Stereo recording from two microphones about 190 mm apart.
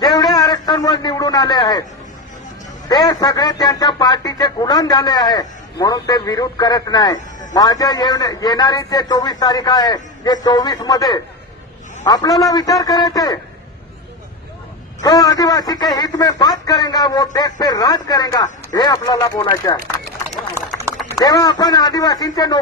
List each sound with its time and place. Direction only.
0.0 s a man's voice: 20° left (ahead or behind)
2.9 s speech: 20° left (ahead or behind)
15.0 s speech: 20° left (ahead or behind)
21.2 s speech: 20° left (ahead or behind)